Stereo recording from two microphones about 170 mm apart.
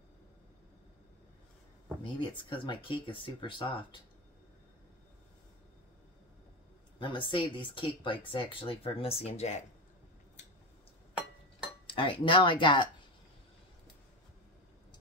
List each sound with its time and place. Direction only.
2.1 s speech: 30° left (ahead or behind)
7.0 s speech: 30° left (ahead or behind)
11.9 s speech: 30° left (ahead or behind)